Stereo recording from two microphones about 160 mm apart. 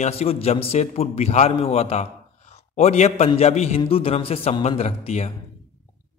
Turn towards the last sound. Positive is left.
turn(degrees=40)  # may be behind; listen again after turning